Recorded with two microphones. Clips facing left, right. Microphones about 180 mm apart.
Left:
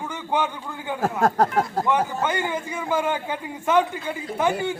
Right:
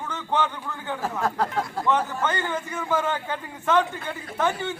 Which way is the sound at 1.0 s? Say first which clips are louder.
Left 6 dB; 45° left (ahead or behind).